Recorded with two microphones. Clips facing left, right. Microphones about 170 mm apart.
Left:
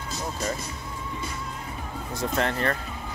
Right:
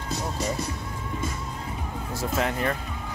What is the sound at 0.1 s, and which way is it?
Music, 70° right (ahead or behind).